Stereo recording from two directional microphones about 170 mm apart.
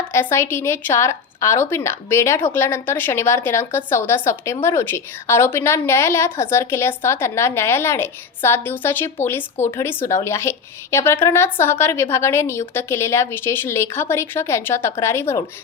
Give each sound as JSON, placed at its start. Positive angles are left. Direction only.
{"t": 0.1, "sound": "a woman's voice", "side_deg": 15}